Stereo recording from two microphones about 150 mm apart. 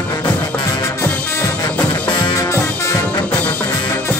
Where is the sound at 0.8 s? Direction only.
15° left (ahead or behind).